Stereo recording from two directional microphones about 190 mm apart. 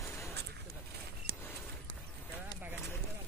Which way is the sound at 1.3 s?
50° right (ahead or behind).